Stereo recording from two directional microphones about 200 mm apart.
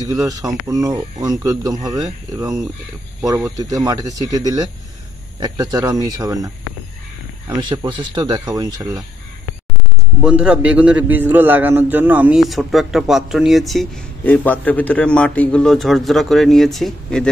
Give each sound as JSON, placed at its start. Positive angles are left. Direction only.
{"t": 0.0, "sound": "speech", "side_deg": -15}
{"t": 10.2, "sound": "a man's voice", "side_deg": -5}